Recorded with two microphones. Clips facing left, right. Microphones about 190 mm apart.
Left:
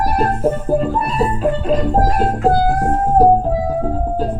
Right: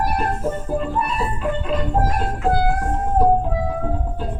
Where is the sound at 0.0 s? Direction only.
40° left (ahead or behind).